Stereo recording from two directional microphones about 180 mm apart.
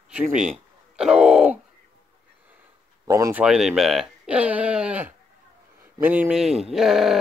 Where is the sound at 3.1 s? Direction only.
15° right (ahead or behind).